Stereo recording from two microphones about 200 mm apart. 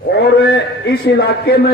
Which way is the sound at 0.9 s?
55° left (ahead or behind).